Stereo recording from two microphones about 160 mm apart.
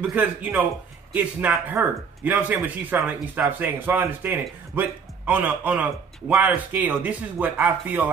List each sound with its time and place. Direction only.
0.0 s speech: 10° right (ahead or behind)